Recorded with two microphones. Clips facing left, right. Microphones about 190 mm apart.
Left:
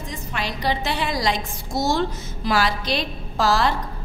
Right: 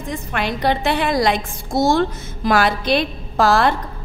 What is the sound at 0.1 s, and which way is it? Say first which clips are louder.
A woman's voice: right 7 dB; 55° right (ahead or behind).